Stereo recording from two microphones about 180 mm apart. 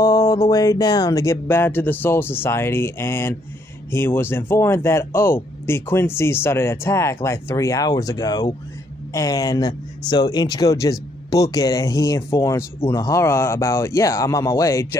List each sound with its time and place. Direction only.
0.0 s speech: 15° left (ahead or behind)